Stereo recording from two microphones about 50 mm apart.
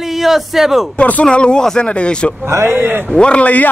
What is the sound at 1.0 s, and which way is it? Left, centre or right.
Speech, left.